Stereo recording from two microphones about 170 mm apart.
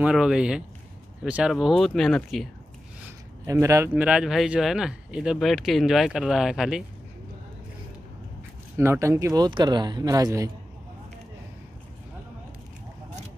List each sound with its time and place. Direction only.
0.0 s speech: 5° right (ahead or behind)
3.4 s speech: 20° right (ahead or behind)
8.7 s speech: 15° right (ahead or behind)